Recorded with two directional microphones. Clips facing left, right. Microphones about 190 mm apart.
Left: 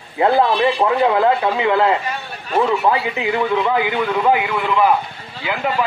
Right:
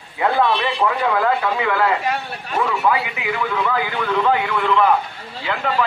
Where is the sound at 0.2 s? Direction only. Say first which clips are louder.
Left 4 dB; 30° left (ahead or behind).